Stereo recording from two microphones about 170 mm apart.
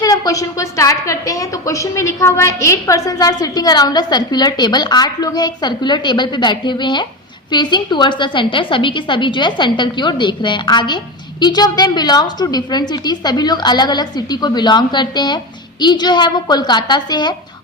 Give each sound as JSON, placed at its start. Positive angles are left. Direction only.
{"t": 0.0, "sound": "a woman's voice", "side_deg": 20}